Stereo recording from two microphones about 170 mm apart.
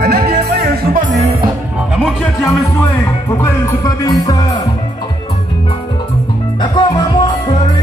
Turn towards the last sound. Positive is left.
turn(degrees=25)  # may be behind; listen again after turning